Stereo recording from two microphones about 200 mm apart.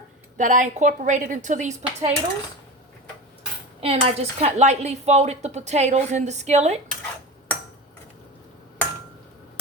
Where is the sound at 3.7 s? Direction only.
30° right (ahead or behind).